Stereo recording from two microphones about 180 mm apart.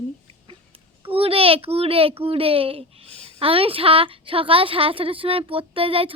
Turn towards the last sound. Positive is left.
turn(degrees=-30)  # may be behind; listen again after turning